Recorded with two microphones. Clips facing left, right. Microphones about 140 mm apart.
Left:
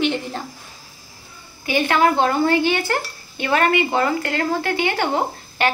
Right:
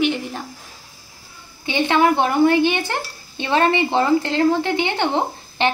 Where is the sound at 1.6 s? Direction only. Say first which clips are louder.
Even; 20° right (ahead or behind).